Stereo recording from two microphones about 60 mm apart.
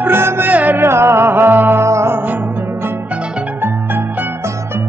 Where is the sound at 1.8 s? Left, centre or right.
Right.